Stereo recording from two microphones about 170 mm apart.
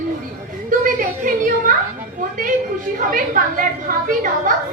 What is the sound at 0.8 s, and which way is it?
A woman's voice, 55° right (ahead or behind).